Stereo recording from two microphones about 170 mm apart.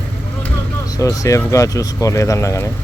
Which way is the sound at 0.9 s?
20° left (ahead or behind).